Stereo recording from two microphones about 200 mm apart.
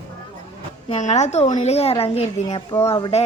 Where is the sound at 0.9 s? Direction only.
35° left (ahead or behind).